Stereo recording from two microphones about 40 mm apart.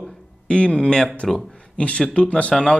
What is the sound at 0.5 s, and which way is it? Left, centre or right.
Speech, left.